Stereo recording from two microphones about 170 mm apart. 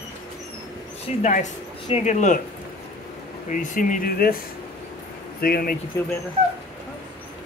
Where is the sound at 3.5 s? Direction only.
50° left (ahead or behind).